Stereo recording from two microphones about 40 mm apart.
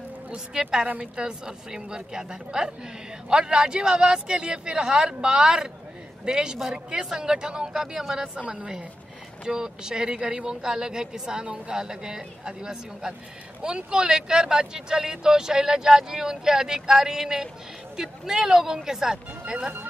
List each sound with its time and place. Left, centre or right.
0.5 s speech: centre